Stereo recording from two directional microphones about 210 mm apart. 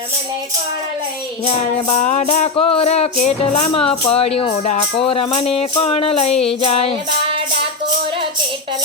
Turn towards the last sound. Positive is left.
turn(degrees=-25)  # may be behind; listen again after turning